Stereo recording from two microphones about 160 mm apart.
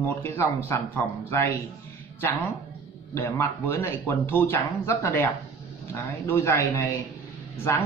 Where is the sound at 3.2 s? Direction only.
15° left (ahead or behind).